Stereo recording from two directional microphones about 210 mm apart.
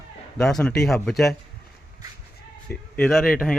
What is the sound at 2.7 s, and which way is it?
Speech, 5° left (ahead or behind).